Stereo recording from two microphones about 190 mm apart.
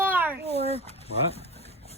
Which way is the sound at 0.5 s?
30° left (ahead or behind).